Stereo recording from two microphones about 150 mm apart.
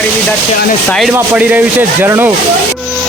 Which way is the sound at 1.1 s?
10° right (ahead or behind).